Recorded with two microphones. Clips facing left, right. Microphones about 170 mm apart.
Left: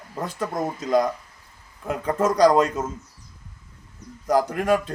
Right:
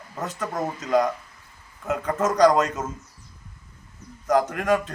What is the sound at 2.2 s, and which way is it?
Speech, 10° left (ahead or behind).